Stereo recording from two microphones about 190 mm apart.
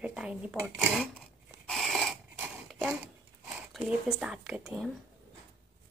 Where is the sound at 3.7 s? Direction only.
5° right (ahead or behind).